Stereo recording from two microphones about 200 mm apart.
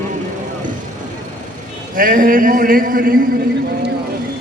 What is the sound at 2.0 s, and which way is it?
Speech, 45° right (ahead or behind).